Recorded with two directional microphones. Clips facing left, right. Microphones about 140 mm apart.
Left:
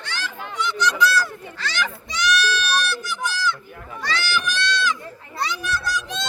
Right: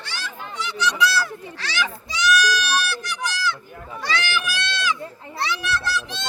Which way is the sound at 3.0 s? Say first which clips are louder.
Left 1 dB; centre (ahead or behind).